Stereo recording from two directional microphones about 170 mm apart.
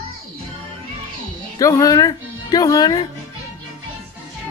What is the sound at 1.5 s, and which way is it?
Speech, 20° left (ahead or behind).